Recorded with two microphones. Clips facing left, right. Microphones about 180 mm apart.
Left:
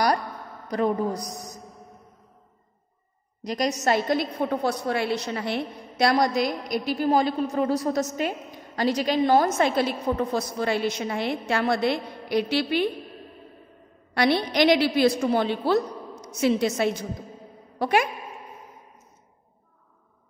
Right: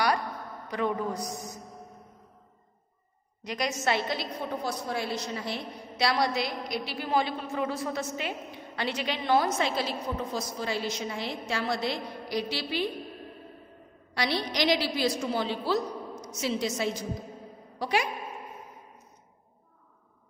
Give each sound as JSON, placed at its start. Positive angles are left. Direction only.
{"t": 0.7, "sound": "a woman's voice", "side_deg": 40}
{"t": 3.4, "sound": "a woman's voice", "side_deg": 40}
{"t": 14.1, "sound": "a woman's voice", "side_deg": 55}